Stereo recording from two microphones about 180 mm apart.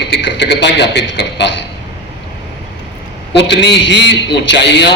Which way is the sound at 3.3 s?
75° left (ahead or behind).